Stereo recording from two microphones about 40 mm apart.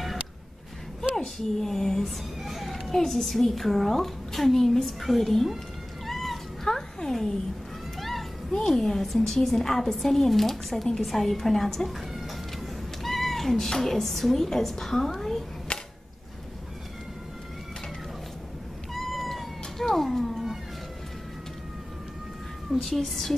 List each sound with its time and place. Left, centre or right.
1.1 s a child's voice: centre
6.0 s cat: centre
6.7 s a sound: centre
8.0 s children playing: centre
8.6 s a woman's voice: centre
15.7 s a sound: left
18.9 s cat: centre
22.8 s a woman's voice: centre